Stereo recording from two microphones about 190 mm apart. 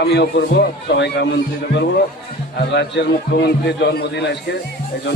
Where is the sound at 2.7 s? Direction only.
65° left (ahead or behind).